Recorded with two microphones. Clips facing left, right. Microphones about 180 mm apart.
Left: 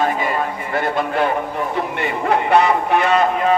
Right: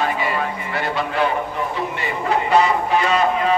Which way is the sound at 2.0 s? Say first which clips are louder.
Left 3 dB; 60° left (ahead or behind).